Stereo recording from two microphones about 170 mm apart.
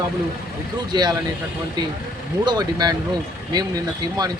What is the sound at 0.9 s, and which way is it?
Speech, 25° right (ahead or behind).